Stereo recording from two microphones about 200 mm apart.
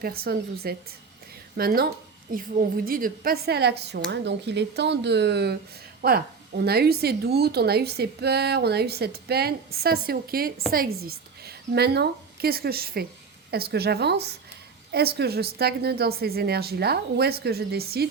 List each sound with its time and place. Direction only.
0.0 s a woman's voice: 50° right (ahead or behind)